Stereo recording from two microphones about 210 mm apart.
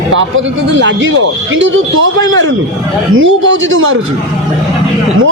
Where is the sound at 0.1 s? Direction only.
65° right (ahead or behind).